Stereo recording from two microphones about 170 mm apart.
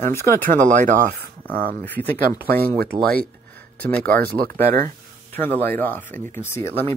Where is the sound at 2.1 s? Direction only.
60° right (ahead or behind).